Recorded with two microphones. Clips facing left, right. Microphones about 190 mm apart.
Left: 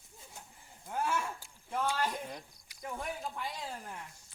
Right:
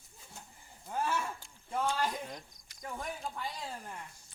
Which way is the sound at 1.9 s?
10° left (ahead or behind).